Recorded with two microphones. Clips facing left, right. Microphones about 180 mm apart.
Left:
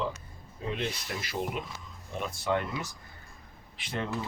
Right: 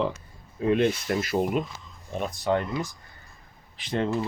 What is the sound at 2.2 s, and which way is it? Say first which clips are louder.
Speech: right 4 dB; 35° right (ahead or behind).